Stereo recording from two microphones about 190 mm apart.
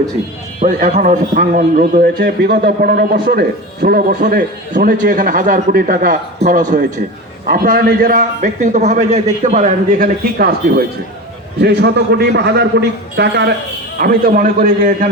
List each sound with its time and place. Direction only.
0.6 s a man's voice: 40° right (ahead or behind); by 13.5 s 65° right (ahead or behind)
14.0 s a man's voice: 50° right (ahead or behind)